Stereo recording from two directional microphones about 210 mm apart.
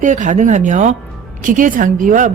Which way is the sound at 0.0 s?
35° right (ahead or behind).